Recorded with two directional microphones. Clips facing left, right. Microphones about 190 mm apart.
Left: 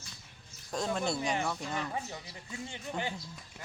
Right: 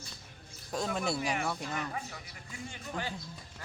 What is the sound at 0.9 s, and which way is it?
Speech, 5° right (ahead or behind).